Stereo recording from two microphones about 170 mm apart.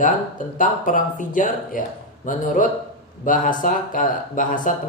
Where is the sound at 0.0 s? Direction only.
50° left (ahead or behind).